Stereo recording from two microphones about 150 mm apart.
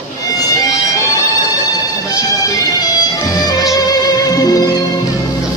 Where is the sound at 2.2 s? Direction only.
25° left (ahead or behind).